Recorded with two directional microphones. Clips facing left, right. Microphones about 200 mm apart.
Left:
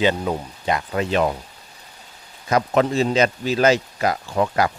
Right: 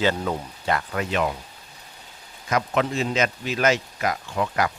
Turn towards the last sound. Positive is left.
turn(degrees=35)  # may be behind; listen again after turning